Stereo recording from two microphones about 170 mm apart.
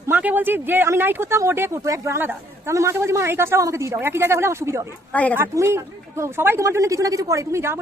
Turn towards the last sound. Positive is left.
turn(degrees=-15)  # may be behind; listen again after turning